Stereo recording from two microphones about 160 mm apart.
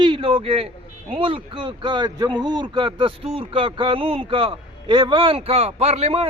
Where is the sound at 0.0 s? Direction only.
30° right (ahead or behind).